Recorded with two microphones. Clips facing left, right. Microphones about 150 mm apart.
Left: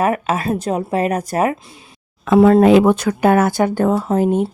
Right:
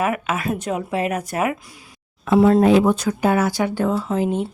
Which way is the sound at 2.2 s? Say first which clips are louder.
Left 4 dB; 65° left (ahead or behind).